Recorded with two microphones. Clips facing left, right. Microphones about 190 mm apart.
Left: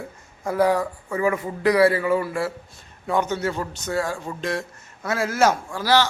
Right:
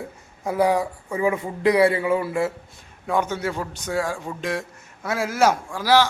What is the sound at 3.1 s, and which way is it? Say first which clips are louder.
A man's voice: left 1 dB; 10° right (ahead or behind).